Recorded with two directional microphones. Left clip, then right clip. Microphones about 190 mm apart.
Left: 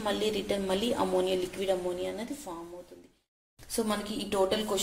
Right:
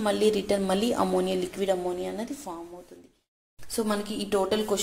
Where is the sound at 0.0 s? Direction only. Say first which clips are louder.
Right 6 dB; 30° right (ahead or behind).